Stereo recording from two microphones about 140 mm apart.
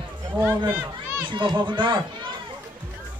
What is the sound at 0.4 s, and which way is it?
Speech, 15° right (ahead or behind).